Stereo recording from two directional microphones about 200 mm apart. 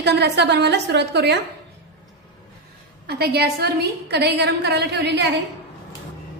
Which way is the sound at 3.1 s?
55° right (ahead or behind).